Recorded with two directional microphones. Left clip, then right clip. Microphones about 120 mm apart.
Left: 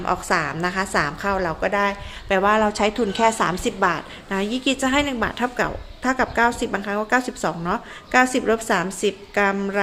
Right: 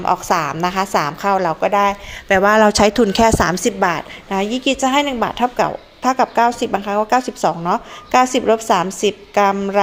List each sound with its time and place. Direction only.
0.0 s a woman's voice: 30° right (ahead or behind)
2.3 s speech: 45° right (ahead or behind)
2.6 s a woman's voice: 70° right (ahead or behind); by 4.0 s 40° right (ahead or behind)
4.3 s a woman's voice: 15° right (ahead or behind)